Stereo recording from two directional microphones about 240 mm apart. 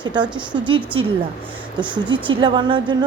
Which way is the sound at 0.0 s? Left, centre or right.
Centre.